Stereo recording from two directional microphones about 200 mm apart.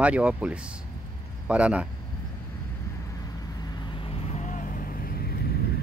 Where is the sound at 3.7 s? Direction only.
25° left (ahead or behind); by 5.5 s 50° left (ahead or behind).